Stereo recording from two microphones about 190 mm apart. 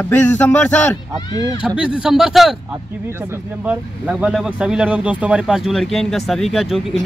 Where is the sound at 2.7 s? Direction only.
10° right (ahead or behind).